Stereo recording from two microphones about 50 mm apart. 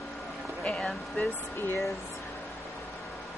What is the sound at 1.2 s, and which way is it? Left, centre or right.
Speech, left.